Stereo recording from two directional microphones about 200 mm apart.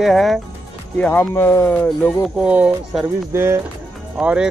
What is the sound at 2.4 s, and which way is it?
Speech, 5° right (ahead or behind).